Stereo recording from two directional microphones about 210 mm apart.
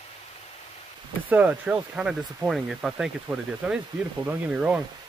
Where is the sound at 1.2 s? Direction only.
5° right (ahead or behind).